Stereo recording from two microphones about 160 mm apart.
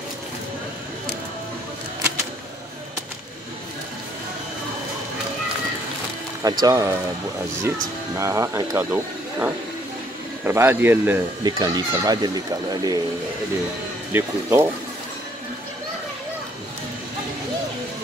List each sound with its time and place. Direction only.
6.6 s speech: 20° right (ahead or behind)
11.4 s speech: 25° right (ahead or behind)
14.1 s speech: 15° right (ahead or behind)